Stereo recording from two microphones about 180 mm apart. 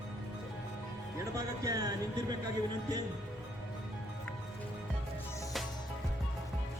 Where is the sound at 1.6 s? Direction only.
20° right (ahead or behind).